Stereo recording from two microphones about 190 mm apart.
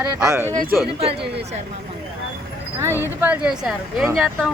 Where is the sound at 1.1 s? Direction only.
60° right (ahead or behind).